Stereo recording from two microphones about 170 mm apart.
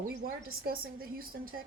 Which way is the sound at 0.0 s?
55° right (ahead or behind).